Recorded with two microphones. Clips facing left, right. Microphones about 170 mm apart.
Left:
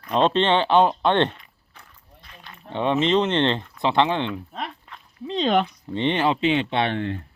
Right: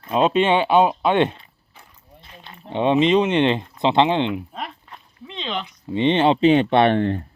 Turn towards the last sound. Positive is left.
turn(degrees=-50)  # may be behind; listen again after turning